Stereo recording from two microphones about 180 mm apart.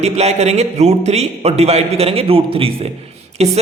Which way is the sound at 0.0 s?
35° right (ahead or behind).